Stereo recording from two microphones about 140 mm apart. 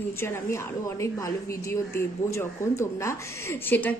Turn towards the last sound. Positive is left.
turn(degrees=15)  # may be behind; listen again after turning